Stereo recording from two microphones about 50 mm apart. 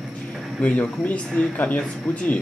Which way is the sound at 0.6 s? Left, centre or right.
Left.